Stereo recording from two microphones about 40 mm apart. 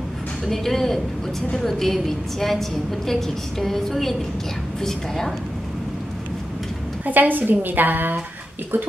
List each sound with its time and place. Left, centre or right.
0.5 s a woman's voice: centre
7.1 s a woman's voice: right